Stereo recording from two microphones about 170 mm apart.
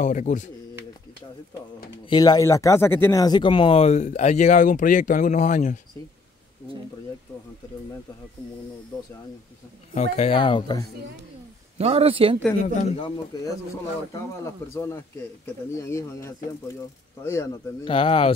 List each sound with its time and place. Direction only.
0.0 s speech: 45° left (ahead or behind)
2.0 s speech: 25° left (ahead or behind); by 5.8 s 45° left (ahead or behind)
9.9 s speech: 40° left (ahead or behind)
11.8 s speech: 35° right (ahead or behind)
12.7 s speech: 35° left (ahead or behind)
13.3 s speech: 20° left (ahead or behind)
17.8 s speech: 30° left (ahead or behind)